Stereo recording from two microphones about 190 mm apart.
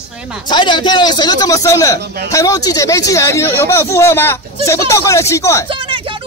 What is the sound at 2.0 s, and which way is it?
Speech, 60° right (ahead or behind).